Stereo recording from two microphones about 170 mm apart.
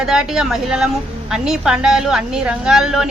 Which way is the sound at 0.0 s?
5° right (ahead or behind).